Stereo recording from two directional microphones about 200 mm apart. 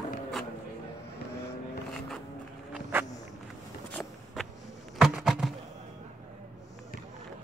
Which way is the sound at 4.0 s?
10° left (ahead or behind).